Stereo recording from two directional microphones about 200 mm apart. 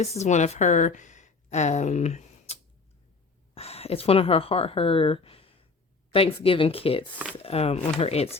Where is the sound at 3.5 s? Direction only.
30° left (ahead or behind).